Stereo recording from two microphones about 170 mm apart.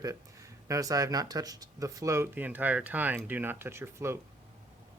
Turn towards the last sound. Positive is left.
turn(degrees=-15)  # may be behind; listen again after turning